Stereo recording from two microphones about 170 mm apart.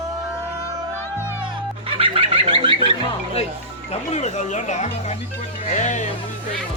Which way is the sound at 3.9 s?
40° left (ahead or behind).